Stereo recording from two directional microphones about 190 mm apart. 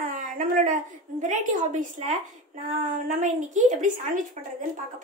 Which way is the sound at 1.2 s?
40° right (ahead or behind).